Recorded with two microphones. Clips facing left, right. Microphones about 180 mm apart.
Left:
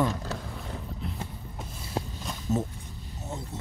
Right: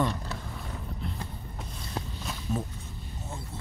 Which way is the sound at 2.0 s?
25° left (ahead or behind).